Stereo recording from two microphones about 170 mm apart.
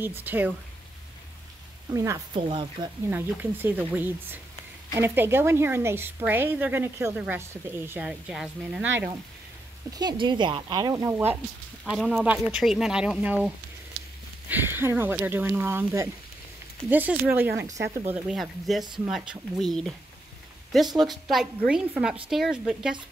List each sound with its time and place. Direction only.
0.0 s a woman's voice: 10° right (ahead or behind)
2.0 s speech: 20° right (ahead or behind)
2.4 s speech: 30° right (ahead or behind)
3.1 s a woman's voice: 10° right (ahead or behind)
9.8 s speech: 25° right (ahead or behind)
11.8 s speech: centre (ahead or behind)
14.5 s a woman's voice: 10° right (ahead or behind)
18.3 s speech: centre (ahead or behind)
21.0 s speech: centre (ahead or behind)